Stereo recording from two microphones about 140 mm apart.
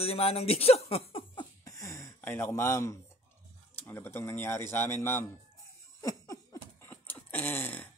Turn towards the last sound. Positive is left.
turn(degrees=10)  # may be behind; listen again after turning